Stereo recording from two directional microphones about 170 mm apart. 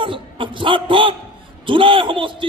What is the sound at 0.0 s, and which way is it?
A man's voice, 30° right (ahead or behind).